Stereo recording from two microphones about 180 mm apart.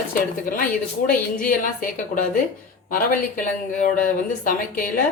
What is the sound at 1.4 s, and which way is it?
A woman's voice, 50° left (ahead or behind).